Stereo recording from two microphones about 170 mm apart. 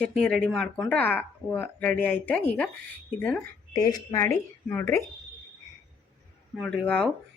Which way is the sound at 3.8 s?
20° left (ahead or behind).